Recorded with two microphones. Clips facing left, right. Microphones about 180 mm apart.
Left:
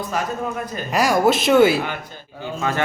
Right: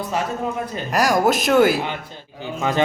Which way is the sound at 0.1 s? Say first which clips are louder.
Right 1 dB; 25° right (ahead or behind).